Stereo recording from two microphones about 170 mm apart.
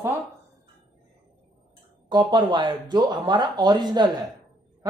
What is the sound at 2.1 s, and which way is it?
Speech, 25° right (ahead or behind).